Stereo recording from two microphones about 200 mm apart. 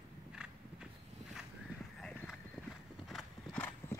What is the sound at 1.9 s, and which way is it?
Clip-clop, centre (ahead or behind).